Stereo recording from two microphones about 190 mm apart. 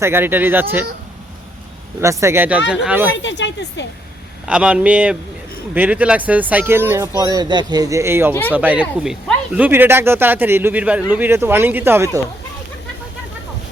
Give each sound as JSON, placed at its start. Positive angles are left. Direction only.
{"t": 0.0, "sound": "a man's voice", "side_deg": -10}
{"t": 2.0, "sound": "a man's voice", "side_deg": -15}
{"t": 3.2, "sound": "speech", "side_deg": 70}
{"t": 4.4, "sound": "a man's voice", "side_deg": -5}